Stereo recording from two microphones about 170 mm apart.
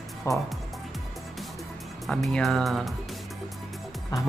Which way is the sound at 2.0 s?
Centre (ahead or behind).